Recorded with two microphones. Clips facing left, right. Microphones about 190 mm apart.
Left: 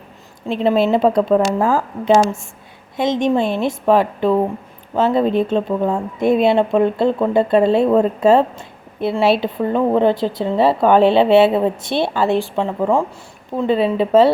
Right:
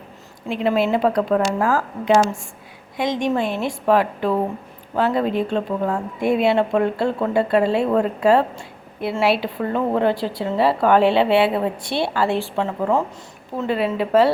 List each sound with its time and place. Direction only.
0.4 s a woman's voice: 25° left (ahead or behind)